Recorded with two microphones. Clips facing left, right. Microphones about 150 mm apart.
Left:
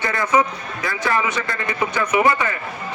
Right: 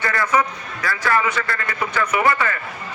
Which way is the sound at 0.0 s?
20° left (ahead or behind).